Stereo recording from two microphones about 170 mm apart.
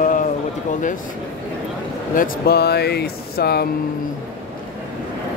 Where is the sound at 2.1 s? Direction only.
70° left (ahead or behind).